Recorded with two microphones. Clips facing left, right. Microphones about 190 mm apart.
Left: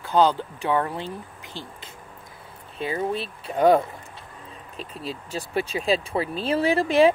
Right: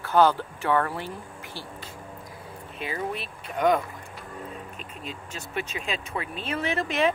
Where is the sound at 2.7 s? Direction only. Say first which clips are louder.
Left 5 dB; 30° left (ahead or behind).